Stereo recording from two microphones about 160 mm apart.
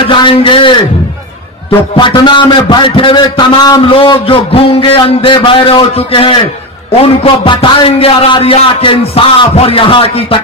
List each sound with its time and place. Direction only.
0.1 s a man's voice: 35° left (ahead or behind)